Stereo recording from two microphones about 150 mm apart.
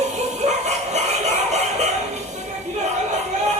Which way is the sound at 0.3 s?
50° right (ahead or behind).